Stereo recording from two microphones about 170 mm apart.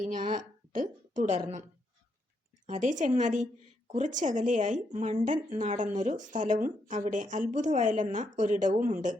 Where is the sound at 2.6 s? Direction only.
45° right (ahead or behind).